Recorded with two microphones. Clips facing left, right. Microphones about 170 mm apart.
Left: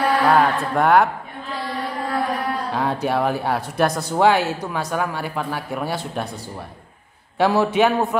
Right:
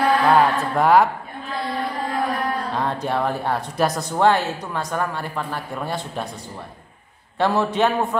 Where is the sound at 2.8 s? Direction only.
5° left (ahead or behind).